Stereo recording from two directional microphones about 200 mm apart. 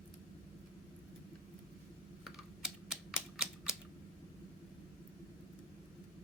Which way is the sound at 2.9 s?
5° right (ahead or behind).